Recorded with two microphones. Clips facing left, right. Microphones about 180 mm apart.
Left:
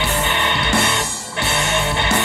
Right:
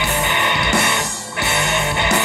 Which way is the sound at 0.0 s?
20° right (ahead or behind).